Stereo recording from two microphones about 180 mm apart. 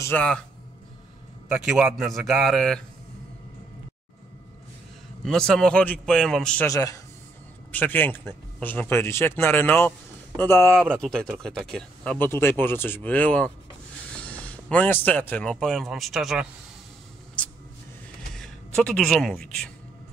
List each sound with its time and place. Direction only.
0.0 s speech: 10° left (ahead or behind)
1.5 s a man's voice: 5° right (ahead or behind)
5.2 s a man's voice: 5° left (ahead or behind)
6.7 s a man's voice: 20° left (ahead or behind); by 16.4 s centre (ahead or behind)
18.3 s speech: 5° left (ahead or behind)